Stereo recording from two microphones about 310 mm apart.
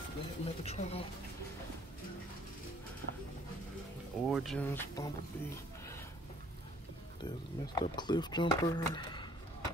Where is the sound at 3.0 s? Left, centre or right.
Right.